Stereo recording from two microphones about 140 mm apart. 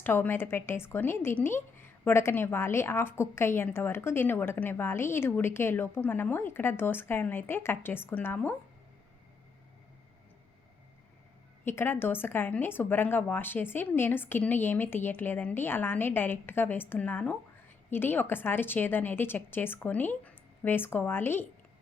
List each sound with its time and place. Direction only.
0.0 s a woman's voice: 15° left (ahead or behind)
11.6 s a woman's voice: 15° left (ahead or behind)